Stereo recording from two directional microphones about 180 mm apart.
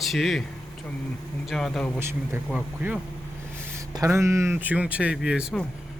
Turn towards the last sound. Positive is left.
turn(degrees=-5)  # may be behind; listen again after turning